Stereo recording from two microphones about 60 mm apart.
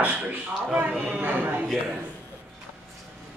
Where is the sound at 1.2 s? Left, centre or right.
Right.